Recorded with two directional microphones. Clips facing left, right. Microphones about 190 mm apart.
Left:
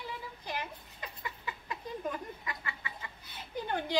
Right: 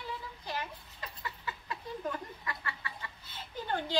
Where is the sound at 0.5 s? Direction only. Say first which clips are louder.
Even; 15° left (ahead or behind).